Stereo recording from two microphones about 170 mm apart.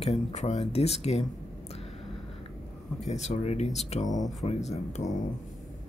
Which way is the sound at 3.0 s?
40° left (ahead or behind).